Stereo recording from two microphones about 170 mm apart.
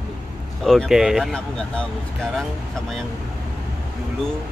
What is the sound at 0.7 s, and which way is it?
Speech, centre (ahead or behind).